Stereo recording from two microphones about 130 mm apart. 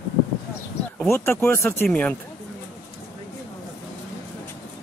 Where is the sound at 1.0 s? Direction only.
20° left (ahead or behind).